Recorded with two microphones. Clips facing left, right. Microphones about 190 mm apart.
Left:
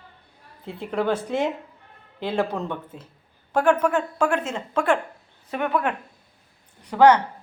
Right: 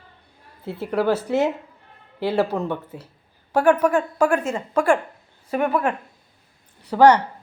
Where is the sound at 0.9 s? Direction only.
5° right (ahead or behind).